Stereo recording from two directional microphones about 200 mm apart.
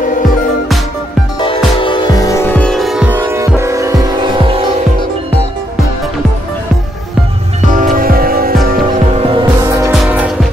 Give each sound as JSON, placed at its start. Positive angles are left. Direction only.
{"t": 1.8, "sound": "music", "side_deg": 25}
{"t": 7.7, "sound": "music", "side_deg": -40}
{"t": 9.1, "sound": "music", "side_deg": -25}
{"t": 9.8, "sound": "music", "side_deg": -5}